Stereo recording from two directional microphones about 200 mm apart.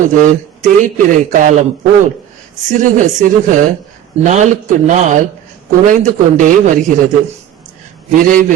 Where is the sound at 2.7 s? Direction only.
40° right (ahead or behind).